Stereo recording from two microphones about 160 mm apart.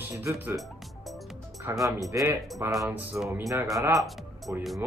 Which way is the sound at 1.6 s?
20° right (ahead or behind).